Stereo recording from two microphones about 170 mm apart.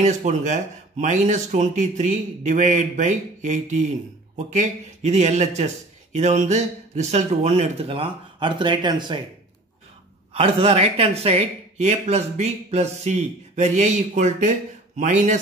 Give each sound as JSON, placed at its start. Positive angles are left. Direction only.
{"t": 0.0, "sound": "speech", "side_deg": -45}
{"t": 10.3, "sound": "speech", "side_deg": -35}